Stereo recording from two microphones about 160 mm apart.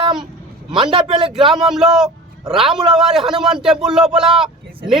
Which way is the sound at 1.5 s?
5° right (ahead or behind).